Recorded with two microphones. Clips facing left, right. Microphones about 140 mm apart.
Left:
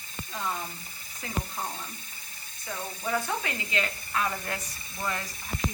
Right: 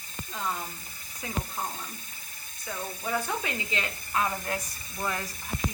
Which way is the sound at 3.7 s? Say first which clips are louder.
Left 1 dB; 20° right (ahead or behind).